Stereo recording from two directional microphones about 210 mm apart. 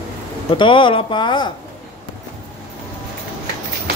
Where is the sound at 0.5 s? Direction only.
25° left (ahead or behind).